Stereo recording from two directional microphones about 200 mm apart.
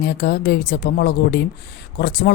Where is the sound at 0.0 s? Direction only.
55° left (ahead or behind).